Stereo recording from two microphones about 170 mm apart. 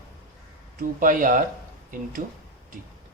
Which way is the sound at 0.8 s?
50° right (ahead or behind).